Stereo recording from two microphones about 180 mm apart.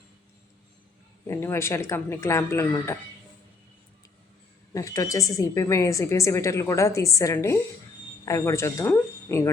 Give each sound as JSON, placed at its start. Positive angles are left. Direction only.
{"t": 1.3, "sound": "a woman's voice", "side_deg": 15}
{"t": 4.7, "sound": "a woman's voice", "side_deg": 20}